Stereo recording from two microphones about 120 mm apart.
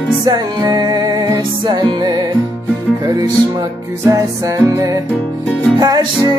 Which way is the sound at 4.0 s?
25° right (ahead or behind).